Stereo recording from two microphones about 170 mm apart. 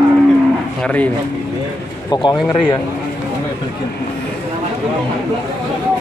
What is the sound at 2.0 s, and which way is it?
Speech, 25° left (ahead or behind).